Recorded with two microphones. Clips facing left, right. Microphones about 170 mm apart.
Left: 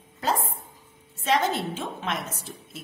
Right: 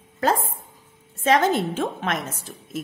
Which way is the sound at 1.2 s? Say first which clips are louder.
Right 5 dB; 50° right (ahead or behind).